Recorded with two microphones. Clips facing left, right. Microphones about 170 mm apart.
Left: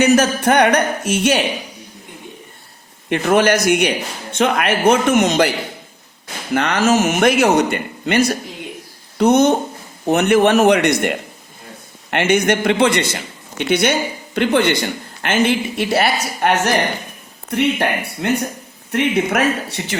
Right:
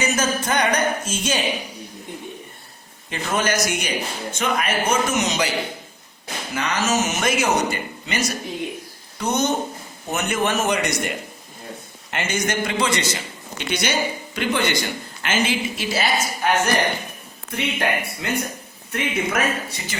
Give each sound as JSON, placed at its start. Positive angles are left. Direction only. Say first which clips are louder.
{"t": 0.0, "sound": "a man's voice", "louder": "left 9 dB", "side_deg": 65}
{"t": 3.1, "sound": "a man's voice", "louder": "left 9 dB", "side_deg": 65}